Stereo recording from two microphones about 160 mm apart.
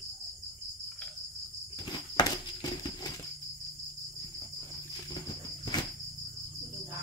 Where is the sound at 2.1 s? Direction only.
25° left (ahead or behind).